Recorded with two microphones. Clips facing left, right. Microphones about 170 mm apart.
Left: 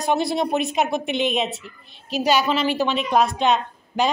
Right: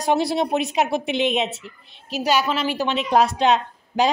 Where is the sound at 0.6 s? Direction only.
90° right.